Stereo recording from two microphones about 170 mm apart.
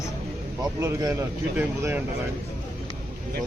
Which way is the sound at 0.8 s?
20° right (ahead or behind).